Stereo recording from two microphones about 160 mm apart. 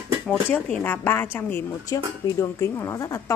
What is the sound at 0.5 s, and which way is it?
A woman's voice, 10° left (ahead or behind).